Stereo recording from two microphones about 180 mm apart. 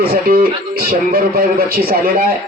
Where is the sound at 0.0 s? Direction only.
55° right (ahead or behind).